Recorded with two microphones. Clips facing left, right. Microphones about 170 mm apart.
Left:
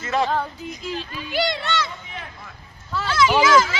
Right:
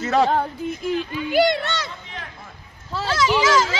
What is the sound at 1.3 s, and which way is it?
Speech, 50° right (ahead or behind).